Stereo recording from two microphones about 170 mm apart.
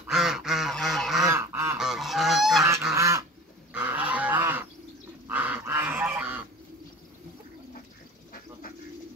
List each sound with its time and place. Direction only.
0.0 s goose: 5° right (ahead or behind)
1.2 s goose: 15° right (ahead or behind)
1.8 s goose: centre (ahead or behind)
2.9 s goose: 20° right (ahead or behind)
3.7 s fowl: 10° right (ahead or behind)
5.3 s goose: 10° right (ahead or behind)